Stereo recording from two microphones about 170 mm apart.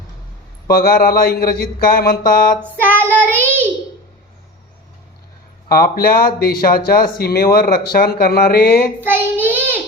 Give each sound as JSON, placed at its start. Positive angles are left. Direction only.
{"t": 0.7, "sound": "speech", "side_deg": 60}
{"t": 2.6, "sound": "child singing", "side_deg": -10}
{"t": 3.4, "sound": "a sound", "side_deg": -10}
{"t": 5.6, "sound": "speech", "side_deg": 60}
{"t": 9.0, "sound": "child singing", "side_deg": -10}